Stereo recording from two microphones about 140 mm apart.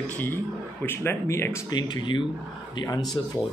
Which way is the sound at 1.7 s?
30° left (ahead or behind).